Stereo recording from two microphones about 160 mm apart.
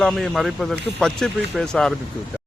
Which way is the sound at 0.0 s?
Centre (ahead or behind).